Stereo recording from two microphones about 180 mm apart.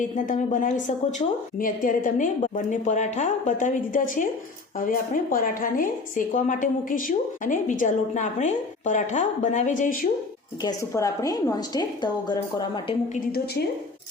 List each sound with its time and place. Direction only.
0.3 s a woman's voice: 45° left (ahead or behind)
10.6 s a woman's voice: 20° left (ahead or behind)
13.1 s a woman's voice: 60° left (ahead or behind)